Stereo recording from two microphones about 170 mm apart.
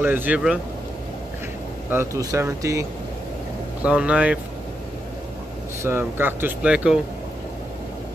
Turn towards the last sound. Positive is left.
turn(degrees=-5)  # may be behind; listen again after turning